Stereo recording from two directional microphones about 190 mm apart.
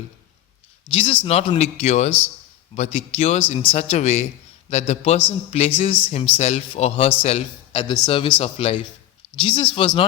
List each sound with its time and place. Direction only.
0.9 s speech: 25° left (ahead or behind)